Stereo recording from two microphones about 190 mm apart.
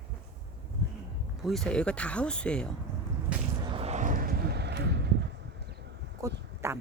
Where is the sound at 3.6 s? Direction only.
25° right (ahead or behind); by 5.1 s 65° right (ahead or behind).